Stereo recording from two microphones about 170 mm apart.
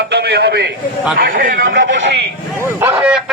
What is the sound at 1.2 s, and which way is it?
Speech, 55° right (ahead or behind).